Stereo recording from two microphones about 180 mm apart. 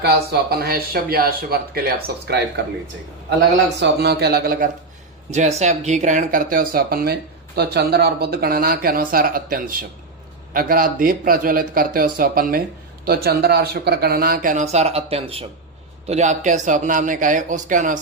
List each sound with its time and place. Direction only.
0.0 s speech: 60° right (ahead or behind)
3.8 s speech: 65° right (ahead or behind)
5.3 s speech: 40° right (ahead or behind)